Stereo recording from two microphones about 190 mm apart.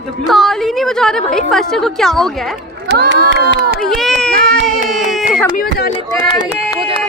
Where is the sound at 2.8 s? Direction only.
60° right (ahead or behind).